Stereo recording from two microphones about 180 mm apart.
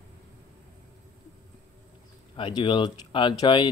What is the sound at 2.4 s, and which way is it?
Speech, 25° left (ahead or behind).